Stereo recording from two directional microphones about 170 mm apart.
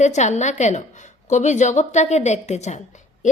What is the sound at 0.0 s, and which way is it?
A woman's voice, 45° left (ahead or behind).